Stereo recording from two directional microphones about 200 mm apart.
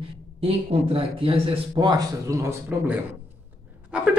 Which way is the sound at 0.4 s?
25° right (ahead or behind).